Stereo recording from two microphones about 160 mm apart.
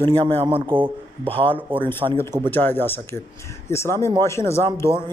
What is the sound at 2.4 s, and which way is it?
Speech, 10° left (ahead or behind).